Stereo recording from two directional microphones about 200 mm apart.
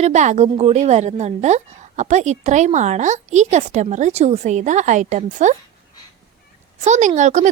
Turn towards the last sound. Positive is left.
turn(degrees=-35)  # may be behind; listen again after turning